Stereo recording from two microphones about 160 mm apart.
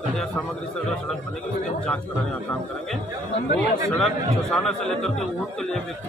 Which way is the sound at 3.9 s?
5° left (ahead or behind).